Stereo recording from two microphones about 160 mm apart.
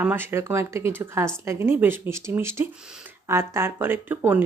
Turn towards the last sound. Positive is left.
turn(degrees=-10)  # may be behind; listen again after turning